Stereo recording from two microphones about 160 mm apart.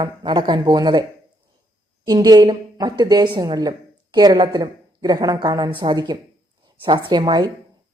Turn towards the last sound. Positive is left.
turn(degrees=-25)  # may be behind; listen again after turning